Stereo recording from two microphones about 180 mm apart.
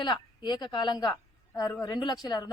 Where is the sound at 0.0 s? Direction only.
25° left (ahead or behind).